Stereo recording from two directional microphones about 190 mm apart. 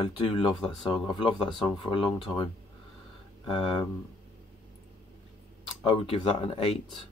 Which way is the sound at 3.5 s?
25° left (ahead or behind).